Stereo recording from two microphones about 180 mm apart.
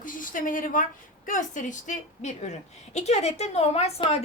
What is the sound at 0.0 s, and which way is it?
A woman's voice, 50° left (ahead or behind).